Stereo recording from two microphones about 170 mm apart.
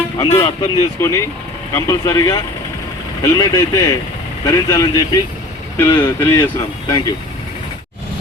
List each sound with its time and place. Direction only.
0.3 s speech: 20° left (ahead or behind)